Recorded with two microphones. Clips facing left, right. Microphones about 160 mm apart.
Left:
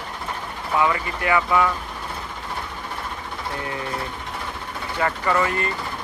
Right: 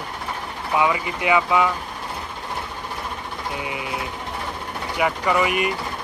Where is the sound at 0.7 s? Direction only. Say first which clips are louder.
Right 1 dB; 15° right (ahead or behind).